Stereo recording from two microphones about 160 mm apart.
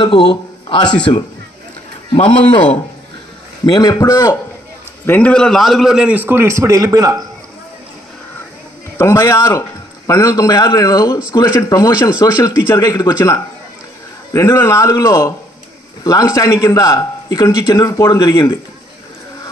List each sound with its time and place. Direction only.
0.0 s a man's voice: 30° left (ahead or behind)
2.2 s speech: 5° left (ahead or behind)
3.6 s a man's voice: 25° left (ahead or behind)
5.0 s a man's voice: 10° left (ahead or behind); by 7.2 s 20° right (ahead or behind)
8.9 s a man's voice: 20° left (ahead or behind)